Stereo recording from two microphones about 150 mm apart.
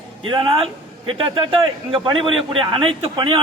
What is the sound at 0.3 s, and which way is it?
A man's voice, 35° right (ahead or behind).